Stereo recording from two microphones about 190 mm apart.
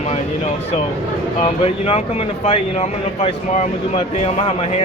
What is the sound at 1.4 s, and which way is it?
Speech, 30° left (ahead or behind).